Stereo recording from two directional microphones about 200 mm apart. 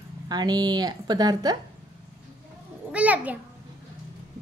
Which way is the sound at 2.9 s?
5° right (ahead or behind).